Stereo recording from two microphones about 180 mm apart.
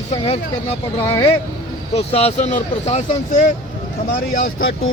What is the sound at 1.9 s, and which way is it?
Speech, 35° left (ahead or behind).